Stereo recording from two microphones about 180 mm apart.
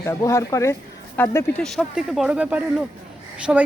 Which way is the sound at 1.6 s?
Centre (ahead or behind).